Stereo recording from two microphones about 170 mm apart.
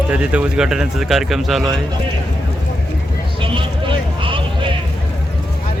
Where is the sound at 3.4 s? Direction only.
30° right (ahead or behind).